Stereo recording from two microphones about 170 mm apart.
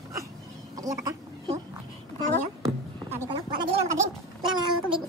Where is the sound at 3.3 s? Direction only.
35° right (ahead or behind).